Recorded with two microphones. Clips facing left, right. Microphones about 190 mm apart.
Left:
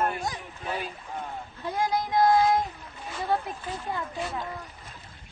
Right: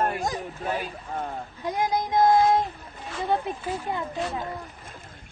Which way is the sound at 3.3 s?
20° right (ahead or behind).